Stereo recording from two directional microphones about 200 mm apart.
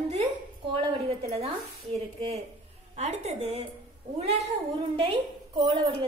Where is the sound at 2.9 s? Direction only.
30° right (ahead or behind).